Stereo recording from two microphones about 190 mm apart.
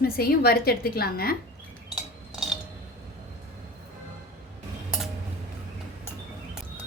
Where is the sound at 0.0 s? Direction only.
55° left (ahead or behind).